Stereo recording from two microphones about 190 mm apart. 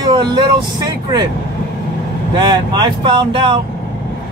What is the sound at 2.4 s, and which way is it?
Speech, 25° right (ahead or behind).